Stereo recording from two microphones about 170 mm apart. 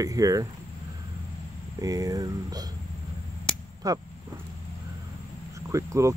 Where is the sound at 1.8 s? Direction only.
20° right (ahead or behind).